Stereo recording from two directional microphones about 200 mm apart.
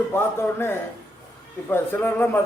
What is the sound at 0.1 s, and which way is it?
A man's voice, 10° left (ahead or behind).